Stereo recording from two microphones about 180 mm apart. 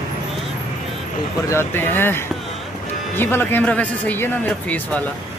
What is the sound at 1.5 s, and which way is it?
Speech, 10° left (ahead or behind).